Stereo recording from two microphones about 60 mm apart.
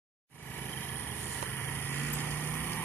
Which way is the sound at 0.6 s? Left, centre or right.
Left.